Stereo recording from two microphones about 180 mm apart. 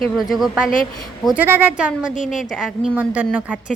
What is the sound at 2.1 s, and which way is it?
Speech, 45° left (ahead or behind).